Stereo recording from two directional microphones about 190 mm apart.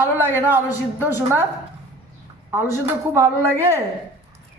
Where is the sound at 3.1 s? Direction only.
15° right (ahead or behind).